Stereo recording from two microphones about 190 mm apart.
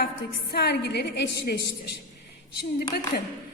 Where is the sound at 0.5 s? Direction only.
60° left (ahead or behind).